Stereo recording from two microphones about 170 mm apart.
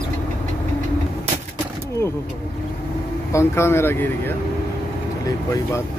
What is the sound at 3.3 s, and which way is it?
Speech, 15° left (ahead or behind).